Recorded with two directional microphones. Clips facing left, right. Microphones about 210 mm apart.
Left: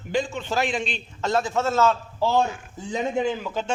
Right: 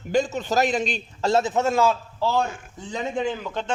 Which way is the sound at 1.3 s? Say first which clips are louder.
Right 2 dB; 20° right (ahead or behind).